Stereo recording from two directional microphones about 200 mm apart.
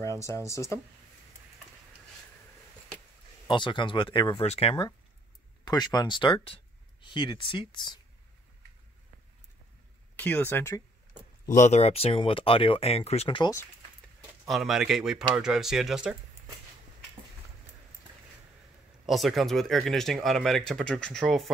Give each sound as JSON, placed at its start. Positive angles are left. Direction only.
{"t": 0.0, "sound": "speech", "side_deg": 15}
{"t": 3.4, "sound": "speech", "side_deg": 25}
{"t": 10.1, "sound": "speech", "side_deg": 10}
{"t": 11.4, "sound": "speech", "side_deg": 35}
{"t": 14.5, "sound": "speech", "side_deg": 0}
{"t": 19.0, "sound": "speech", "side_deg": 0}